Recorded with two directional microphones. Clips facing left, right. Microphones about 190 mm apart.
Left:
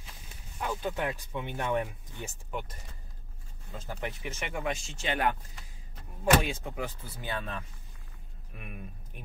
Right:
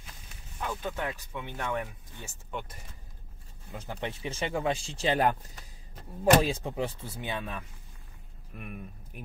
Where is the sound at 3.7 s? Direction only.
15° right (ahead or behind).